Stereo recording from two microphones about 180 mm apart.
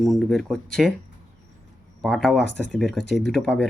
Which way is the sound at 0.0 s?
Centre (ahead or behind).